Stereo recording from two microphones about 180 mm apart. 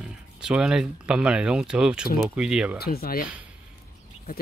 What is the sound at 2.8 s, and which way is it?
Speech, 55° left (ahead or behind).